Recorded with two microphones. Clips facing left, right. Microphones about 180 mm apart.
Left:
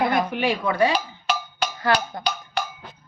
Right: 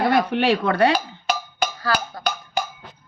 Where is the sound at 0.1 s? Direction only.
75° right (ahead or behind).